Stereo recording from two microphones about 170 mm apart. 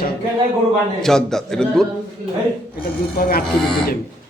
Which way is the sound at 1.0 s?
5° left (ahead or behind).